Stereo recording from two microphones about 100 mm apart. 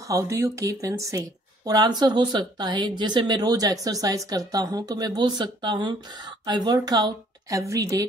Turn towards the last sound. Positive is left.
turn(degrees=-30)  # may be behind; listen again after turning